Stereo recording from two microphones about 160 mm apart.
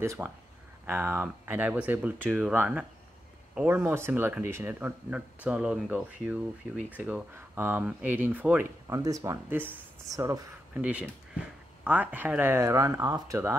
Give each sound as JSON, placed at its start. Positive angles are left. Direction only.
{"t": 0.0, "sound": "speech", "side_deg": -20}
{"t": 8.9, "sound": "speech", "side_deg": -20}
{"t": 10.7, "sound": "speech", "side_deg": -10}